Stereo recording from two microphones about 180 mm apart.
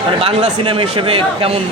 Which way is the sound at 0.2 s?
30° right (ahead or behind).